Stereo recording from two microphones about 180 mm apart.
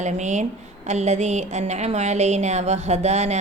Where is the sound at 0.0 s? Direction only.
40° right (ahead or behind).